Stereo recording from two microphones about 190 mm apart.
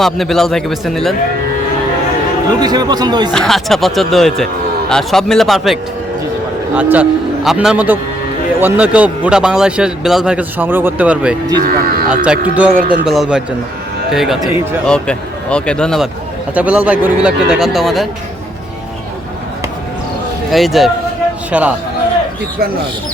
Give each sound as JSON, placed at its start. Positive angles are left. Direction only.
{"t": 0.0, "sound": "a man's voice", "side_deg": 0}
{"t": 2.6, "sound": "speech", "side_deg": -20}
{"t": 3.3, "sound": "a man's voice", "side_deg": 0}
{"t": 11.6, "sound": "speech", "side_deg": -50}
{"t": 12.2, "sound": "a man's voice", "side_deg": -5}
{"t": 16.6, "sound": "a man's voice", "side_deg": -5}
{"t": 20.5, "sound": "a man's voice", "side_deg": 0}